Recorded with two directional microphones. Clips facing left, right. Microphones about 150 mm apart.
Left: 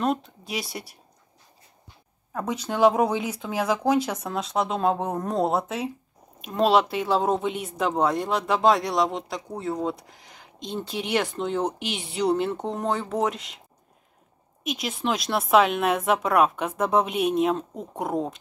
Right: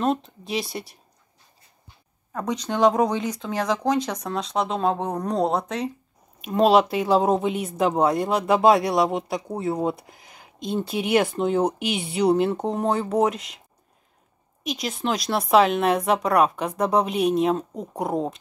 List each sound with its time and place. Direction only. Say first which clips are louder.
0.0 s speech: right 2 dB; centre (ahead or behind)
2.3 s speech: right 2 dB; 5° left (ahead or behind)
14.6 s speech: right 1 dB; 5° left (ahead or behind)